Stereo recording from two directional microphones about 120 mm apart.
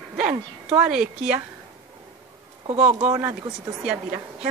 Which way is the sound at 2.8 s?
15° right (ahead or behind).